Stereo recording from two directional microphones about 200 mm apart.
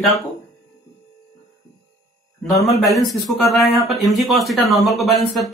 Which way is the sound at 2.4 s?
Centre (ahead or behind).